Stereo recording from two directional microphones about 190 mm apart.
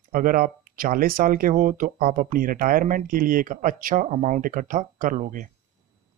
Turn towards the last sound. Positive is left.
turn(degrees=-45)  # may be behind; listen again after turning